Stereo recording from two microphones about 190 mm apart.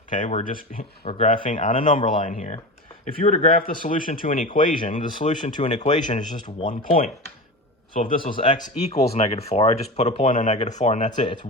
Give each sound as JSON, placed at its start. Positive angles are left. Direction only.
{"t": 0.1, "sound": "speech", "side_deg": 40}